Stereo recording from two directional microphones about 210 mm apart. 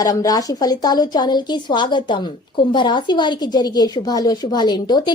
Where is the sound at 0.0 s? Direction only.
15° left (ahead or behind).